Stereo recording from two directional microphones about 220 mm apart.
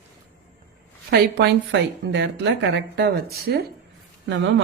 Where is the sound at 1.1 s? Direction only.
50° right (ahead or behind).